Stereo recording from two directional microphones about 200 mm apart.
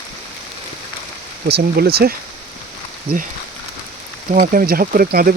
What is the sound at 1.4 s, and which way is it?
Speech, 55° right (ahead or behind).